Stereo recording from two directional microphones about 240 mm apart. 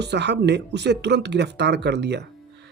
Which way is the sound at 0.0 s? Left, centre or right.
Right.